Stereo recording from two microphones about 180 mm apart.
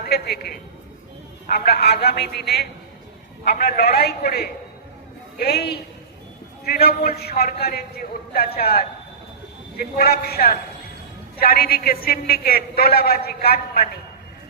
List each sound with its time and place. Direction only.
0.1 s a woman's voice: 60° left (ahead or behind)